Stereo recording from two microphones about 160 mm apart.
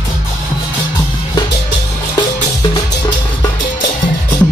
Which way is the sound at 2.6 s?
25° left (ahead or behind).